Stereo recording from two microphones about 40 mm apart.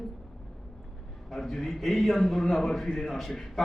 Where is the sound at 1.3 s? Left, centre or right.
Centre.